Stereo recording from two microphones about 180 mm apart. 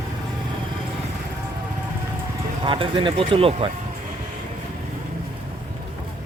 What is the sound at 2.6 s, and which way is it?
Speech, 30° right (ahead or behind).